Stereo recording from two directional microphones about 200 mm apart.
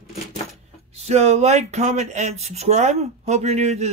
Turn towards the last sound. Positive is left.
turn(degrees=-35)  # may be behind; listen again after turning